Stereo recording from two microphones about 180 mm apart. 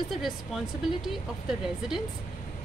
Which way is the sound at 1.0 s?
Centre (ahead or behind).